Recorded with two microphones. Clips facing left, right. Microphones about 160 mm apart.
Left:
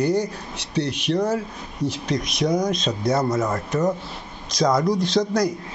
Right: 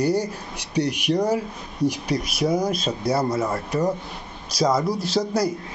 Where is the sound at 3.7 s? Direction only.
10° right (ahead or behind).